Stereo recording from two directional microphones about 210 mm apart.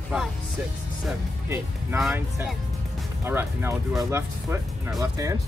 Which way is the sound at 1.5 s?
5° right (ahead or behind).